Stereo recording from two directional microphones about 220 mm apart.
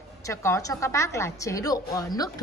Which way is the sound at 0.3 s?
15° left (ahead or behind).